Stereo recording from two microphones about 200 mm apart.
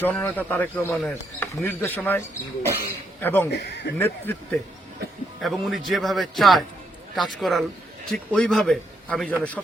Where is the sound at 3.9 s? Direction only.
10° left (ahead or behind).